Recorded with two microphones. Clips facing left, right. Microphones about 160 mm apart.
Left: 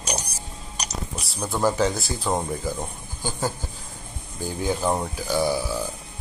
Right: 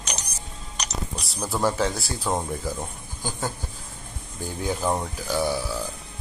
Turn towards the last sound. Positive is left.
turn(degrees=5)  # may be behind; listen again after turning